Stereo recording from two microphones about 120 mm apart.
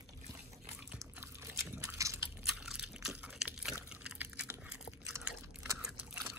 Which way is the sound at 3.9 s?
5° right (ahead or behind).